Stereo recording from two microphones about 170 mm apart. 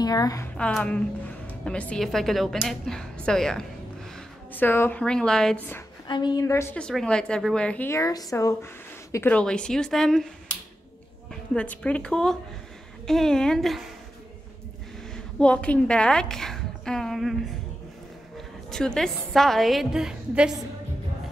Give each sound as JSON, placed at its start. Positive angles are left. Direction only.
{"t": 0.0, "sound": "a woman's voice", "side_deg": 20}
{"t": 0.6, "sound": "a woman's voice", "side_deg": 5}
{"t": 6.0, "sound": "a woman's voice", "side_deg": 25}
{"t": 11.5, "sound": "a woman's voice", "side_deg": 10}
{"t": 15.1, "sound": "a woman's voice", "side_deg": 5}
{"t": 18.7, "sound": "speech", "side_deg": 5}